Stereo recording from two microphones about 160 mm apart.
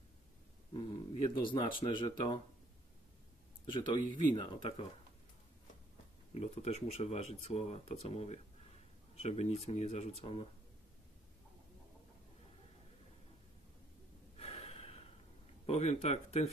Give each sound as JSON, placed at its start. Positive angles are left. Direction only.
{"t": 0.7, "sound": "speech", "side_deg": 30}
{"t": 3.6, "sound": "speech", "side_deg": 30}
{"t": 6.3, "sound": "speech", "side_deg": 40}
{"t": 14.3, "sound": "gasp", "side_deg": 40}
{"t": 15.6, "sound": "speech", "side_deg": 40}